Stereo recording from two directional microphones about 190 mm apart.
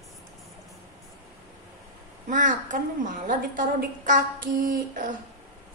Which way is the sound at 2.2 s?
45° right (ahead or behind).